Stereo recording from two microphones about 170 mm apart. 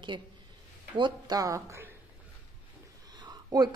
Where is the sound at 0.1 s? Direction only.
25° right (ahead or behind).